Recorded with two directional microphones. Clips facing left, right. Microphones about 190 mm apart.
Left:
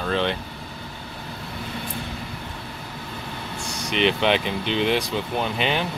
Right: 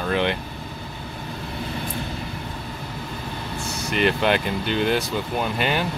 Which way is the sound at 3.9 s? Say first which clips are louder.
Even; centre (ahead or behind).